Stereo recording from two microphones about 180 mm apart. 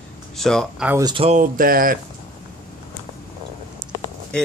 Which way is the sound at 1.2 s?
45° right (ahead or behind).